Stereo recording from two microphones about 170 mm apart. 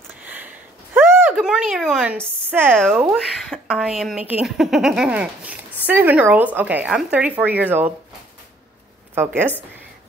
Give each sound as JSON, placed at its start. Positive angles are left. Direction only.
{"t": 0.2, "sound": "a sound", "side_deg": -10}
{"t": 0.9, "sound": "a woman's voice", "side_deg": -10}
{"t": 9.1, "sound": "speech", "side_deg": -15}